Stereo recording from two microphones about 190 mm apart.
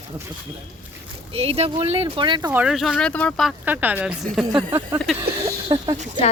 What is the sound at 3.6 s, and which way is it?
Speech, 10° right (ahead or behind).